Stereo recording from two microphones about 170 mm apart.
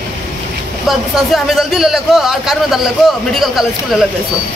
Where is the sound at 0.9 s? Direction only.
Centre (ahead or behind).